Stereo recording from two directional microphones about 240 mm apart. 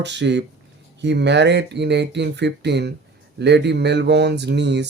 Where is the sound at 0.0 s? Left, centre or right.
Right.